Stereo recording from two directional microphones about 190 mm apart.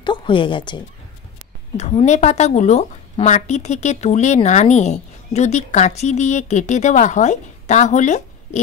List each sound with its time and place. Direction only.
0.0 s a woman's voice: 25° left (ahead or behind)
1.8 s a woman's voice: 35° left (ahead or behind)